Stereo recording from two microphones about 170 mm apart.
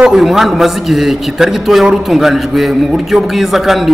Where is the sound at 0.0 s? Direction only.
Centre (ahead or behind).